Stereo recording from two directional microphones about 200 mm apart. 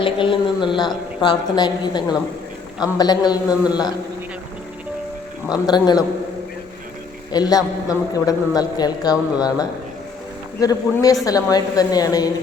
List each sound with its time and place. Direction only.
0.0 s a woman's voice: 25° left (ahead or behind)
5.6 s a man's voice: 20° left (ahead or behind)
7.3 s a man's voice: 20° left (ahead or behind)